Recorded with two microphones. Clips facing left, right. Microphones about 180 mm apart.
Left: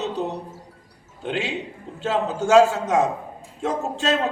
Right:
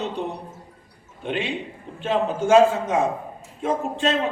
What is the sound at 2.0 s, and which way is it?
A man's voice, 75° left (ahead or behind).